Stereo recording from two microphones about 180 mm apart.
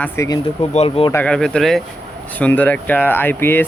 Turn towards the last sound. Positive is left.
turn(degrees=10)  # may be behind; listen again after turning